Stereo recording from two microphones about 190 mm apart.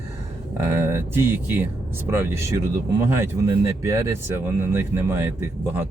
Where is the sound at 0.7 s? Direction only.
15° right (ahead or behind).